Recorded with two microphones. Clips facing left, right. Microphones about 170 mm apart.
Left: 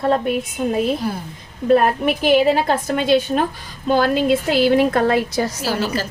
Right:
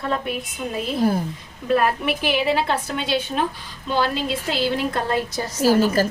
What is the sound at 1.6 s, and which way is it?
A woman's voice, 45° left (ahead or behind).